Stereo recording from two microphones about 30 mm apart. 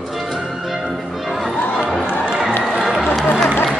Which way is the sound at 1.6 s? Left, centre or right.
Left.